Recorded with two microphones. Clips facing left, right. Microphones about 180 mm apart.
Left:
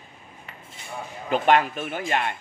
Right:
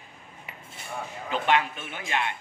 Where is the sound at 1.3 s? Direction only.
45° left (ahead or behind).